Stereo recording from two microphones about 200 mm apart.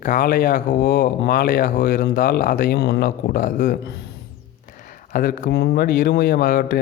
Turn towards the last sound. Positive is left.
turn(degrees=45)  # may be behind; listen again after turning